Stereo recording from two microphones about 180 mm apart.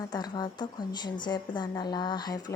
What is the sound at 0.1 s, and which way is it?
A woman's voice, 25° left (ahead or behind).